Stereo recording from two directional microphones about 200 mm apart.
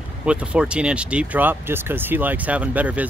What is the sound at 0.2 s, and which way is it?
Speech, 5° right (ahead or behind).